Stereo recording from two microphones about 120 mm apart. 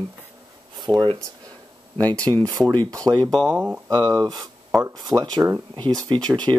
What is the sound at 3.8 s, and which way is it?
Speech, 35° right (ahead or behind).